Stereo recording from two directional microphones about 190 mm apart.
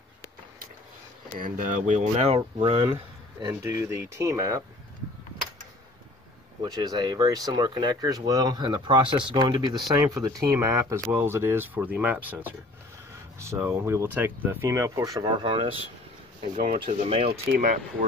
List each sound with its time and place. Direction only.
1.4 s speech: 45° right (ahead or behind); by 4.6 s 15° right (ahead or behind)
6.6 s speech: 20° right (ahead or behind)
16.5 s speech: 45° right (ahead or behind)
16.8 s speech: 30° right (ahead or behind)
17.3 s speech: 45° right (ahead or behind)